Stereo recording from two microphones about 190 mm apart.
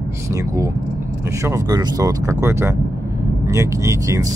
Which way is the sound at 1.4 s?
20° right (ahead or behind).